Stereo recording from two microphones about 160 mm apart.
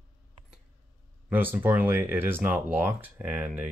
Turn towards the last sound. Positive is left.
turn(degrees=-10)  # may be behind; listen again after turning